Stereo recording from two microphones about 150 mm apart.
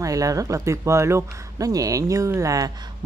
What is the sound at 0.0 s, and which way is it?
Speech, 20° right (ahead or behind).